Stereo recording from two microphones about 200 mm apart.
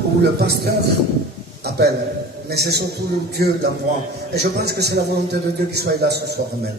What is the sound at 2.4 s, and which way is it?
Speech, 55° right (ahead or behind).